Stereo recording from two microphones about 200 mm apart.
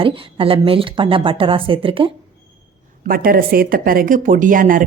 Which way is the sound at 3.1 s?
45° right (ahead or behind).